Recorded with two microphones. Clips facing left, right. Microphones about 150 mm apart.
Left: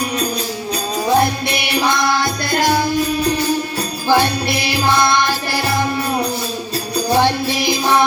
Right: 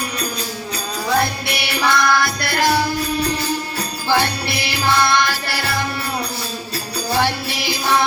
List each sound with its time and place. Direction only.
1.0 s music: 20° left (ahead or behind)
4.1 s music: 15° left (ahead or behind)